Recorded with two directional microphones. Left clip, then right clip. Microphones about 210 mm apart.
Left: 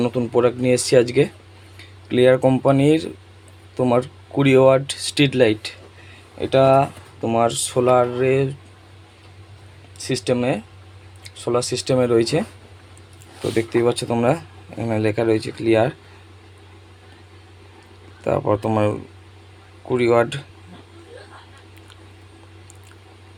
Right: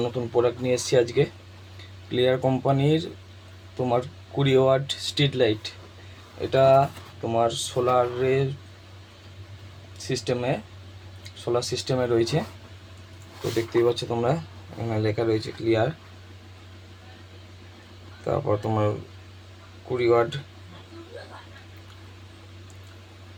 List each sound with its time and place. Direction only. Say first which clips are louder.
0.0 s speech: left 5 dB; 50° left (ahead or behind)
10.0 s speech: left 6 dB; 45° left (ahead or behind)
13.6 s speech: left 3 dB; 55° left (ahead or behind)
18.3 s speech: left 6 dB; 45° left (ahead or behind)
19.9 s speech: left 4 dB; 50° left (ahead or behind)